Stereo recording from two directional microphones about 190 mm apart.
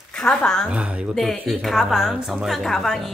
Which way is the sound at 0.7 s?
5° right (ahead or behind).